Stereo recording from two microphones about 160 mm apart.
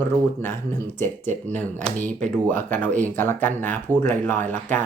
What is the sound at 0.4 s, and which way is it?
Speech, 15° left (ahead or behind).